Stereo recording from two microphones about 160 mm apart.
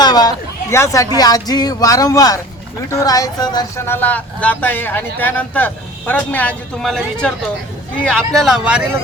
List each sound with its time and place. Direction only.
0.0 s speech: 25° left (ahead or behind); by 8.8 s 5° right (ahead or behind)